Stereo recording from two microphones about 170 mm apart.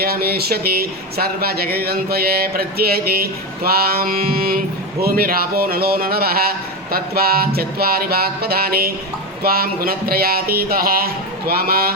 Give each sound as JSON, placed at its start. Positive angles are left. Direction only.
{"t": 0.0, "sound": "a man's voice", "side_deg": -65}